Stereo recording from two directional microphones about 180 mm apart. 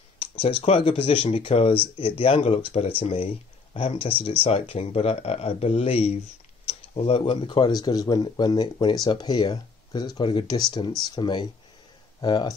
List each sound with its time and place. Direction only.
0.2 s speech: 30° left (ahead or behind)